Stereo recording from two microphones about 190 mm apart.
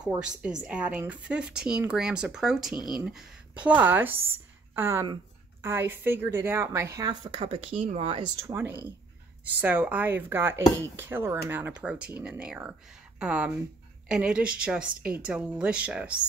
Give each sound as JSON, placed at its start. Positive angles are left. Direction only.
{"t": 0.2, "sound": "a woman's voice", "side_deg": -5}
{"t": 8.4, "sound": "a woman's voice", "side_deg": -15}